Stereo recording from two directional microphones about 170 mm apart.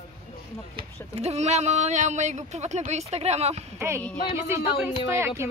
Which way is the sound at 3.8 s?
15° right (ahead or behind).